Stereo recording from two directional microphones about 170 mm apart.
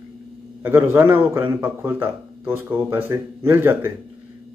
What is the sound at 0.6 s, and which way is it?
Speech, 15° right (ahead or behind).